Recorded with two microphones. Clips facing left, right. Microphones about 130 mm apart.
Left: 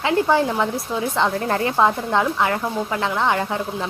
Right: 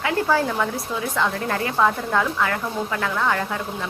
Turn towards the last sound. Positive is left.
turn(degrees=25)  # may be behind; listen again after turning